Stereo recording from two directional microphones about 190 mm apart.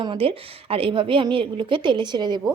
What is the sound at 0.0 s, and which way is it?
A woman's voice, 30° right (ahead or behind).